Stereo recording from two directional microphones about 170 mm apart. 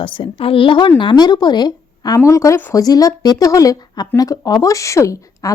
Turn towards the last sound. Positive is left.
turn(degrees=20)  # may be behind; listen again after turning